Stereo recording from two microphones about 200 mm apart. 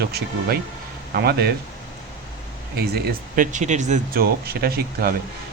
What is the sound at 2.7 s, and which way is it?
A man's voice, 50° right (ahead or behind).